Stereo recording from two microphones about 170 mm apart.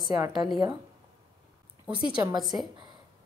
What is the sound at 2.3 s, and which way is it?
Speech, centre (ahead or behind).